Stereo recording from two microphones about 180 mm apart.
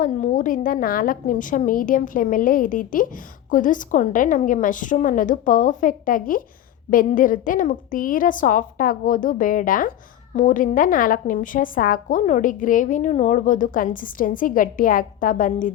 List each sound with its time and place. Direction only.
0.0 s a woman's voice: 45° left (ahead or behind)